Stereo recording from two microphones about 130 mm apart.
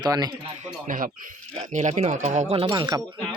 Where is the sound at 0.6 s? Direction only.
90° right.